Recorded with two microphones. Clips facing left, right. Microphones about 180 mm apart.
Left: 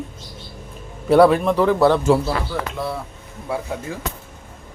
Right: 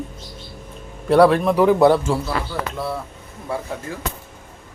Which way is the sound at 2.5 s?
Centre (ahead or behind).